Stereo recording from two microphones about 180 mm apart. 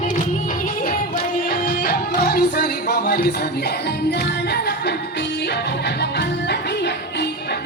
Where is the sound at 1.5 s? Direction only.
60° left (ahead or behind).